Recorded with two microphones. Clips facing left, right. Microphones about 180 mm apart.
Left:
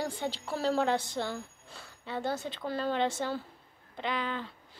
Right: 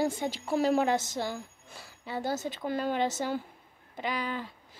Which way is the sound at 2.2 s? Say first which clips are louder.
Right 2 dB; 40° right (ahead or behind).